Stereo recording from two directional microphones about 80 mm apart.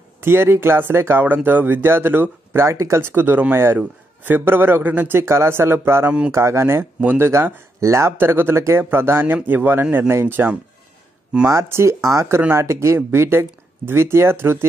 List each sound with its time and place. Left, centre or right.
0.2 s speech: right
11.4 s speech: right